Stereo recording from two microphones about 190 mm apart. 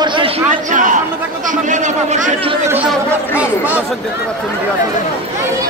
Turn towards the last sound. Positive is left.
turn(degrees=-5)  # may be behind; listen again after turning